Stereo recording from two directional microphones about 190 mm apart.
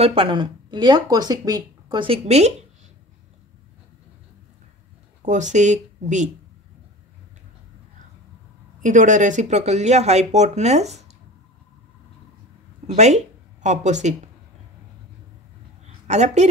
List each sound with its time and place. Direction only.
0.0 s speech: 30° right (ahead or behind)
5.2 s speech: 40° right (ahead or behind)
8.8 s speech: 40° right (ahead or behind)
12.8 s speech: 35° right (ahead or behind)
16.1 s speech: 35° right (ahead or behind)